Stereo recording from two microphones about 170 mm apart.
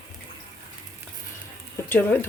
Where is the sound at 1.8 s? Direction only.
10° left (ahead or behind).